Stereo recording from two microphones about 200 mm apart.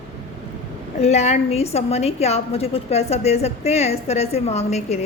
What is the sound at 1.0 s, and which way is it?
A woman's voice, 35° left (ahead or behind).